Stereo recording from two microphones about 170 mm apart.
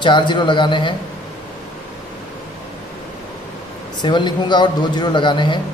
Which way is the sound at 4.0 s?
25° left (ahead or behind).